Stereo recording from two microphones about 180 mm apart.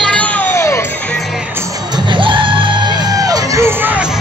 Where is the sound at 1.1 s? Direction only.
Centre (ahead or behind).